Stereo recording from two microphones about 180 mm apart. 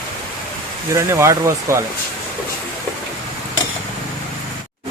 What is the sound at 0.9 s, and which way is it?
Speech, 15° right (ahead or behind).